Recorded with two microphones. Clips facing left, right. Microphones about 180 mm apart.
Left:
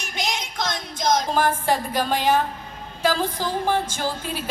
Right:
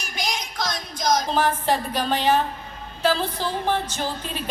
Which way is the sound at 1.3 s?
10° left (ahead or behind).